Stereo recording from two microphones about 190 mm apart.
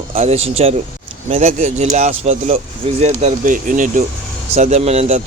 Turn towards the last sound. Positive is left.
turn(degrees=-35)  # may be behind; listen again after turning